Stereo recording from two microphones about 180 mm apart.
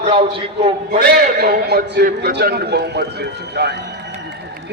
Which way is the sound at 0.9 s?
55° right (ahead or behind).